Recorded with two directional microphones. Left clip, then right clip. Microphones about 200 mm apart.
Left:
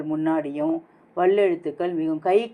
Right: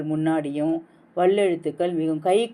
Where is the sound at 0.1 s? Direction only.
35° right (ahead or behind).